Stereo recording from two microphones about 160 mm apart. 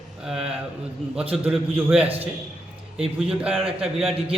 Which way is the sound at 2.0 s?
35° right (ahead or behind).